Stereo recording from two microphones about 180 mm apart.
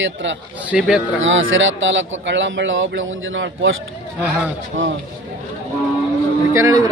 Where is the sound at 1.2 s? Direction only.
90° right.